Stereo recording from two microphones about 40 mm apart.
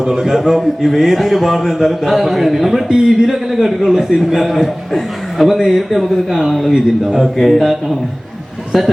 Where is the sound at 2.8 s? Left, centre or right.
Centre.